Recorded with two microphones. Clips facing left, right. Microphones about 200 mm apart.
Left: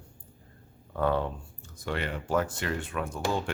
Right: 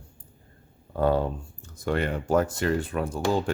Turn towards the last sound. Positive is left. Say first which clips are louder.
# right 6 dB
turn(degrees=-30)  # may be behind; listen again after turning